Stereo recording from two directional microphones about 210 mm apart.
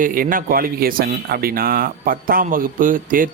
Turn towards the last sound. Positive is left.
turn(degrees=-40)  # may be behind; listen again after turning